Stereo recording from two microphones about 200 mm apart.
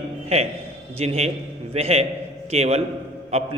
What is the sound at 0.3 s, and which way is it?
A man's voice, 30° right (ahead or behind).